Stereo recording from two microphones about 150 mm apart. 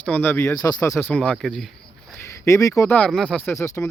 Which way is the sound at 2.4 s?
20° left (ahead or behind).